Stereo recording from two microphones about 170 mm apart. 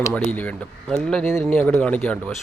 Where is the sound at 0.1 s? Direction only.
10° left (ahead or behind).